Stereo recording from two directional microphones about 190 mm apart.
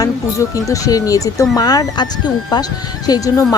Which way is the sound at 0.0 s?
15° left (ahead or behind).